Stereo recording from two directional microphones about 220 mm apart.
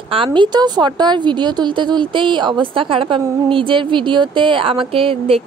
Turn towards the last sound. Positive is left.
turn(degrees=-25)  # may be behind; listen again after turning